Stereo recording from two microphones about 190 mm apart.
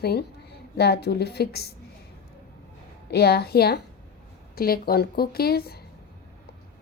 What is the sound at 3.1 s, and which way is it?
A woman's voice, 55° left (ahead or behind).